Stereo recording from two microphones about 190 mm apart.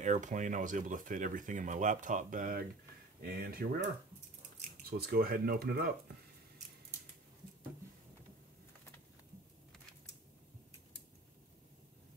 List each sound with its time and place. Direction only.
0.0 s speech: 40° right (ahead or behind)